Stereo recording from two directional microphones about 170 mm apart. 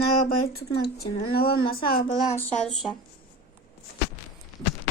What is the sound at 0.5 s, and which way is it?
Speech, 65° left (ahead or behind).